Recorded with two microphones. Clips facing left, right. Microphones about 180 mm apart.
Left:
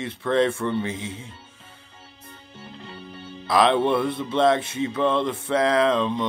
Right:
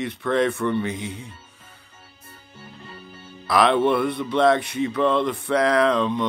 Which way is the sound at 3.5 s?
25° left (ahead or behind).